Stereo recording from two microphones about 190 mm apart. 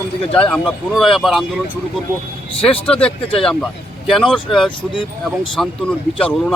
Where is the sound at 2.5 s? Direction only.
30° left (ahead or behind).